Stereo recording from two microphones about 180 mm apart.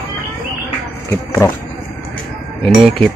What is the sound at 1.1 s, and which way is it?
Speech, 10° left (ahead or behind).